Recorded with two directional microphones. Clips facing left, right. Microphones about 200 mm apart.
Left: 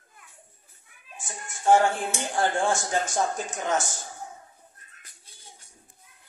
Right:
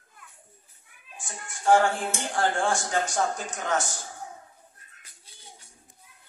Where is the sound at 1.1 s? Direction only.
20° left (ahead or behind).